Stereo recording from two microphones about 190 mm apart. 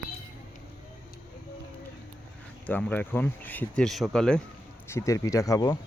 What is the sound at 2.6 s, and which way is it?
Speech, 10° left (ahead or behind).